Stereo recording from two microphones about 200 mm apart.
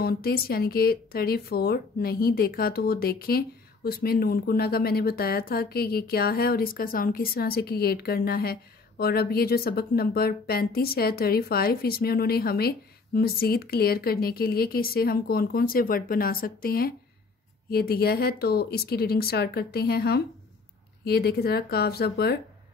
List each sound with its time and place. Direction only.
0.0 s speech: 50° left (ahead or behind)